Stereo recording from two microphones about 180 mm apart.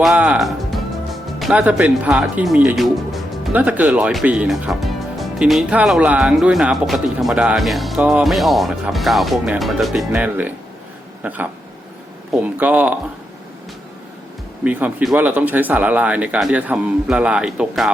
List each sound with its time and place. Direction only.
0.0 s speech: 5° right (ahead or behind)
14.6 s speech: 10° right (ahead or behind)